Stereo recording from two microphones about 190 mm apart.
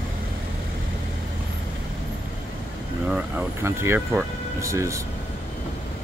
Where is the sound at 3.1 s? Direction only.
5° right (ahead or behind).